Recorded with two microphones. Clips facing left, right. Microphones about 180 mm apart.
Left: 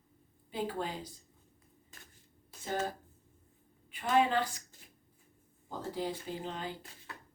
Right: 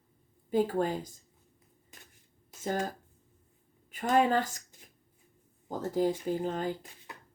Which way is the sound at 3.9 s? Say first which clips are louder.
Right 3 dB; 45° right (ahead or behind).